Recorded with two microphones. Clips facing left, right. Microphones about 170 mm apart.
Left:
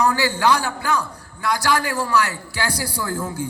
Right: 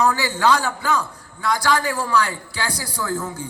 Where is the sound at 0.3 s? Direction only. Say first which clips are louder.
Even; 10° left (ahead or behind).